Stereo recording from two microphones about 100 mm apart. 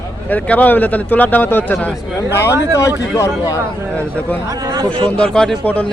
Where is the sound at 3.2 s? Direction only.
35° left (ahead or behind).